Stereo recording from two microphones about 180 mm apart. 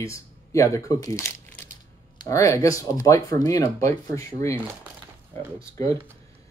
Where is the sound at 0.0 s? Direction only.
15° left (ahead or behind).